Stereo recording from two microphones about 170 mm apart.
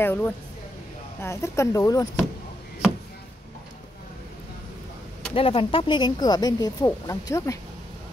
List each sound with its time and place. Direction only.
0.0 s speech: 10° left (ahead or behind)
5.3 s speech: 35° left (ahead or behind)